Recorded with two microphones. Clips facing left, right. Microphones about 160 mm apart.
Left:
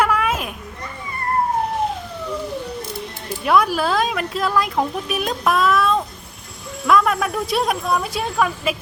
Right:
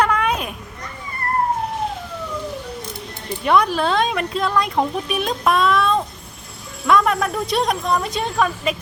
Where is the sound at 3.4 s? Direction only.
Centre (ahead or behind).